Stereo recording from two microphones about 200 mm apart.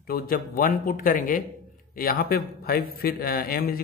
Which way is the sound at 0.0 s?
45° left (ahead or behind).